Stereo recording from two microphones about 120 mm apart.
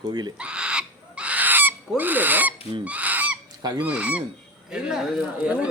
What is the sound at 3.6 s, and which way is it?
Goose, 35° right (ahead or behind).